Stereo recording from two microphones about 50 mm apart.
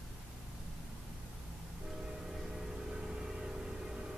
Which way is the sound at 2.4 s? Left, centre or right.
Centre.